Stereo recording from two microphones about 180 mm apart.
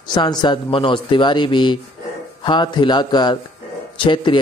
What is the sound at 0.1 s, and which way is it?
Speech, 25° left (ahead or behind).